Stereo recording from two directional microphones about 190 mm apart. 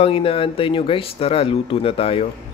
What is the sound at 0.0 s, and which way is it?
Speech, 30° left (ahead or behind).